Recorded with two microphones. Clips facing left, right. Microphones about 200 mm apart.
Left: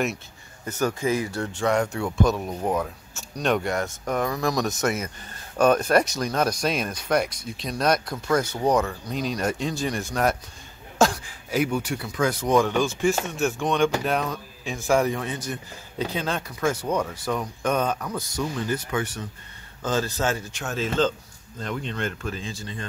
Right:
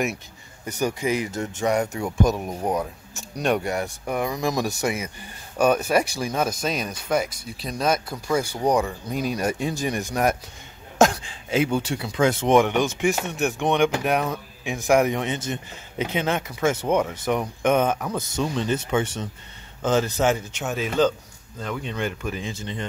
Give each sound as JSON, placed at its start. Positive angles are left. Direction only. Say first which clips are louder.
{"t": 0.7, "sound": "speech", "louder": "even", "side_deg": -15}